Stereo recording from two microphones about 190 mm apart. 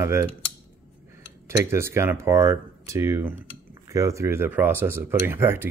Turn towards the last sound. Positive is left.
turn(degrees=-10)  # may be behind; listen again after turning